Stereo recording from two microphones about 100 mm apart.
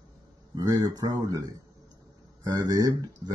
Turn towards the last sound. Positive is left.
turn(degrees=-40)  # may be behind; listen again after turning